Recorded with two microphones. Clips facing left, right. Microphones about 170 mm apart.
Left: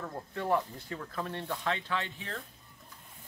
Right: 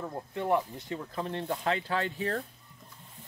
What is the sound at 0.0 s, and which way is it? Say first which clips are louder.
Speech: right 2 dB; 20° right (ahead or behind).